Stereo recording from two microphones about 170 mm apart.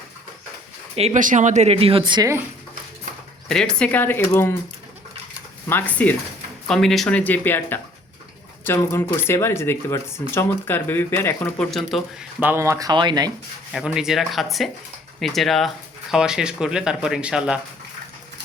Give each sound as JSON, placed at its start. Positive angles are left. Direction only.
{"t": 0.9, "sound": "a woman's voice", "side_deg": -40}
{"t": 3.5, "sound": "speech", "side_deg": 5}
{"t": 5.6, "sound": "speech", "side_deg": 10}
{"t": 13.7, "sound": "speech", "side_deg": -5}